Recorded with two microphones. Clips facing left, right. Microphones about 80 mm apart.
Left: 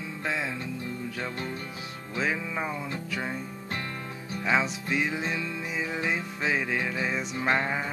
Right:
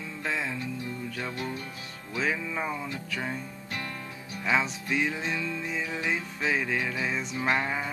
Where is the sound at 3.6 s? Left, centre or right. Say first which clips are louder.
Left 2 dB; left.